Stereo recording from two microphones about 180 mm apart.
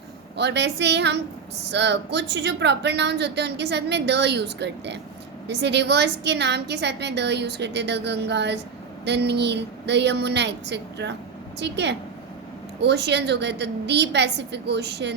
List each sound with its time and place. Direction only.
0.3 s speech: 70° right (ahead or behind)